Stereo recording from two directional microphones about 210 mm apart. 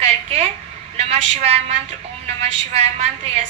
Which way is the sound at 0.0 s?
30° right (ahead or behind).